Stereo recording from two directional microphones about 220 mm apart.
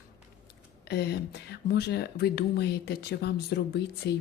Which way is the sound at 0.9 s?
50° left (ahead or behind).